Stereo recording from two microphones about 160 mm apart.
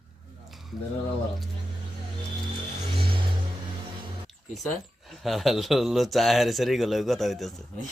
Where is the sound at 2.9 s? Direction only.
35° right (ahead or behind).